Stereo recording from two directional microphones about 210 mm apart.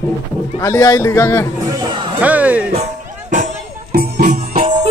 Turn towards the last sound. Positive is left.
turn(degrees=-40)  # may be behind; listen again after turning